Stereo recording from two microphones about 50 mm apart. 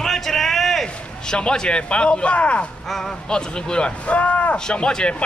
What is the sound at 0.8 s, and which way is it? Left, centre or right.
Speech, centre.